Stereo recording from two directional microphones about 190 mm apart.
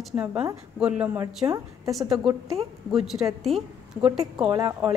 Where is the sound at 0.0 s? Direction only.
5° right (ahead or behind).